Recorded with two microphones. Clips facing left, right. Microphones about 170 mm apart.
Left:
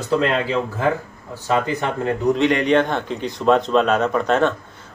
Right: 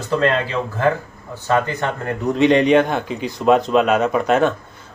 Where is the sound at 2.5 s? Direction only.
15° right (ahead or behind).